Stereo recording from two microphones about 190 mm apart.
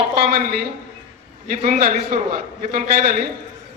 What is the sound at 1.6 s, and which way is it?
A man's voice, 45° right (ahead or behind).